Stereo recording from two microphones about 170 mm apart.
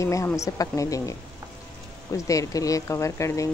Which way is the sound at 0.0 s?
15° left (ahead or behind).